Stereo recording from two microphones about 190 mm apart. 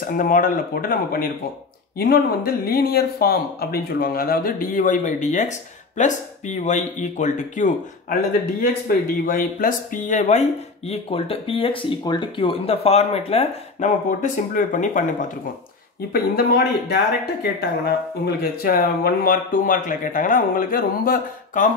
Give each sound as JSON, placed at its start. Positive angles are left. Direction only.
{"t": 0.0, "sound": "speech", "side_deg": 45}
{"t": 16.1, "sound": "speech", "side_deg": 55}